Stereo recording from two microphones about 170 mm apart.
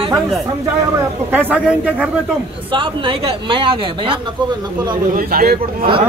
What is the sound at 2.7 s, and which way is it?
Speech, 30° right (ahead or behind).